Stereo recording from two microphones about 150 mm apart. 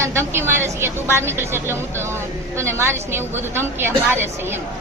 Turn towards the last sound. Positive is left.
turn(degrees=-15)  # may be behind; listen again after turning